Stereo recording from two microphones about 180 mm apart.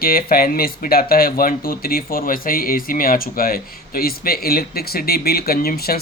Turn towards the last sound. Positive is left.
turn(degrees=60)  # may be behind; listen again after turning